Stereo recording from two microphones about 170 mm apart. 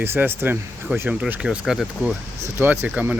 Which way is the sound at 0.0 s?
15° right (ahead or behind).